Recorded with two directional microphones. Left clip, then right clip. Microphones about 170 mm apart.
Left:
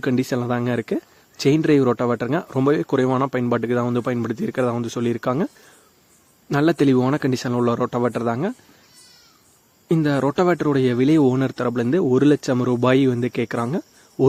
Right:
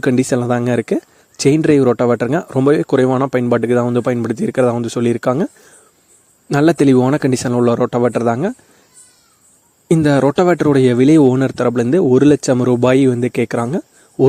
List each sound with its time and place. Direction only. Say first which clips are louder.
0.0 s speech: right 7 dB; 35° right (ahead or behind)
6.5 s speech: right 6 dB; 35° right (ahead or behind)
9.9 s speech: right 7 dB; 35° right (ahead or behind)